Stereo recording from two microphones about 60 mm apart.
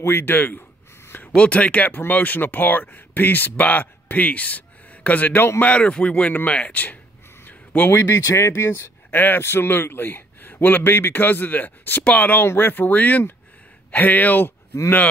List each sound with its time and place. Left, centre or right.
0.0 s speech: left
1.0 s a sound: left
1.3 s speech: left
7.4 s a sound: left
7.9 s speech: left
12.4 s speech: left